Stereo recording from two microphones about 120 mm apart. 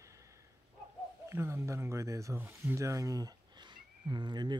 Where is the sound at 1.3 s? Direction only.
25° right (ahead or behind).